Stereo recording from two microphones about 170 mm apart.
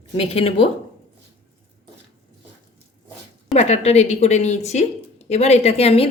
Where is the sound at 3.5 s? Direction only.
40° left (ahead or behind).